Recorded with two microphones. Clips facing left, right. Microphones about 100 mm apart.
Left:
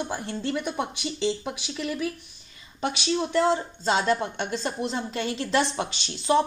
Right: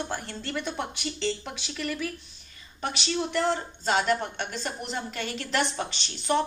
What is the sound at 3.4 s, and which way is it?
Speech, 20° left (ahead or behind).